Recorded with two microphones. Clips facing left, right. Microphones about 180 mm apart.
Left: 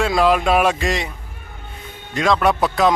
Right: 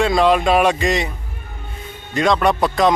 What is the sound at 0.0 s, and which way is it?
Speech, centre (ahead or behind).